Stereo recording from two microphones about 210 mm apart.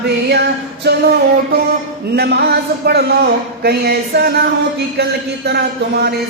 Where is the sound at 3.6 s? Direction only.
50° right (ahead or behind).